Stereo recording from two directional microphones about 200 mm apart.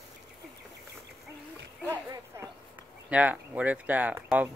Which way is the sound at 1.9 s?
15° right (ahead or behind).